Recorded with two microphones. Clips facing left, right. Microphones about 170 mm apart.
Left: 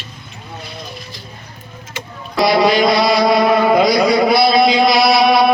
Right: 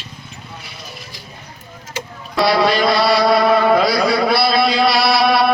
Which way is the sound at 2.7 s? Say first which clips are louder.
Left 2 dB; 20° left (ahead or behind).